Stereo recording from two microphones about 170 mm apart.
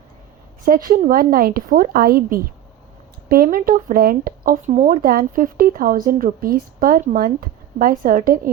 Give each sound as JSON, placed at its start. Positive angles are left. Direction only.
{"t": 0.6, "sound": "speech", "side_deg": -55}